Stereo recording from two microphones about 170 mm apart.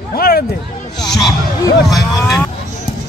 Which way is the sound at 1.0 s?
Centre (ahead or behind).